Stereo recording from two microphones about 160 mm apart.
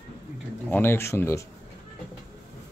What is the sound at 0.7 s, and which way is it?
Speech, 15° left (ahead or behind).